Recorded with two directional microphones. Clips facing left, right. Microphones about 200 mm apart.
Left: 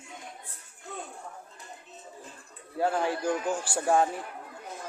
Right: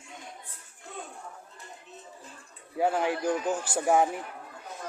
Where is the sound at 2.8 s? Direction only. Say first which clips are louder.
Right 1 dB; 15° right (ahead or behind).